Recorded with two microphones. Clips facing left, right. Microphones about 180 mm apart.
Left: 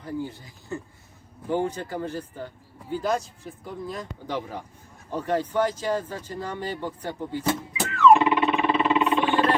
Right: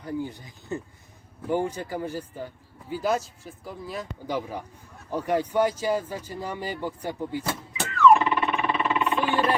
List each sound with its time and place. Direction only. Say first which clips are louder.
0.0 s speech: even; 15° right (ahead or behind)
7.8 s music: left 1 dB; centre (ahead or behind)
8.2 s music: left 4 dB; 20° left (ahead or behind)
9.1 s a sound: left 2 dB; 10° right (ahead or behind)